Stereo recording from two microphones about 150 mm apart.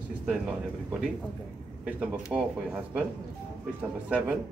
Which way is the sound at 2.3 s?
5° right (ahead or behind).